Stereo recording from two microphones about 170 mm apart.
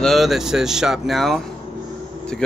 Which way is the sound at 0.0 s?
Centre (ahead or behind).